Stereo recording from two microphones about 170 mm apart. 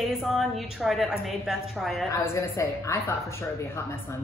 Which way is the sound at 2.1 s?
15° left (ahead or behind).